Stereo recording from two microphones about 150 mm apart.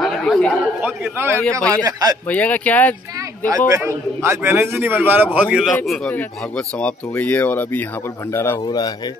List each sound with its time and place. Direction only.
0.0 s chatter: 5° left (ahead or behind)
0.6 s a man's voice: 10° right (ahead or behind)
1.9 s speech: 25° right (ahead or behind)
2.2 s speech: 10° left (ahead or behind)
3.4 s a man's voice: 20° right (ahead or behind); by 5.8 s 5° right (ahead or behind)
5.9 s speech: 5° left (ahead or behind)
8.6 s speech: 25° left (ahead or behind)